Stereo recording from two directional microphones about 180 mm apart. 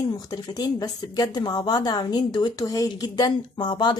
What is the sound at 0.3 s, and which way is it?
A woman's voice, 20° left (ahead or behind).